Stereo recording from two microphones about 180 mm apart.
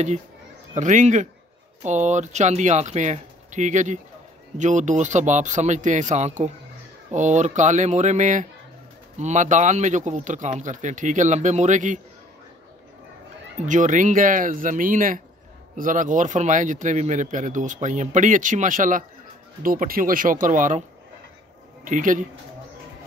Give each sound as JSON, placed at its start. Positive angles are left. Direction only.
{"t": 0.7, "sound": "speech", "side_deg": -45}
{"t": 13.7, "sound": "speech", "side_deg": -45}
{"t": 21.8, "sound": "speech", "side_deg": -45}